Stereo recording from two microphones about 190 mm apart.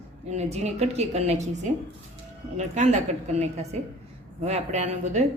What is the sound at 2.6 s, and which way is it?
Speech, 35° right (ahead or behind).